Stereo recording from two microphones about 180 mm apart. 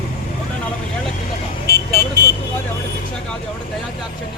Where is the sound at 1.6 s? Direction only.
65° right (ahead or behind).